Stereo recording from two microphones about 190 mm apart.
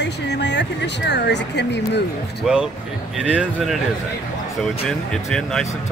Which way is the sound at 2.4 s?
Centre (ahead or behind).